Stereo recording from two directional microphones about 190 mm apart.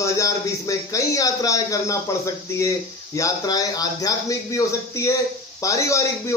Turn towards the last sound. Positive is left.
turn(degrees=15)  # may be behind; listen again after turning